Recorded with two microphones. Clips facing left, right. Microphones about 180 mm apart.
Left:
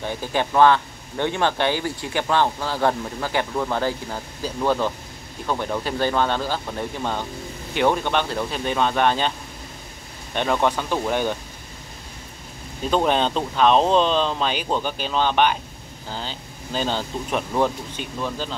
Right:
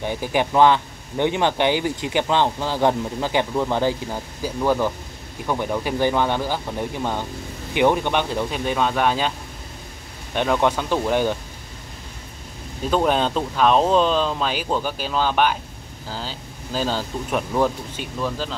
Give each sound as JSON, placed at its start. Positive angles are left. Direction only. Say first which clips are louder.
{"t": 0.0, "sound": "speech", "louder": "right 2 dB", "side_deg": -15}
{"t": 10.3, "sound": "speech", "louder": "right 1 dB", "side_deg": -10}
{"t": 12.9, "sound": "speech", "louder": "right 1 dB", "side_deg": -5}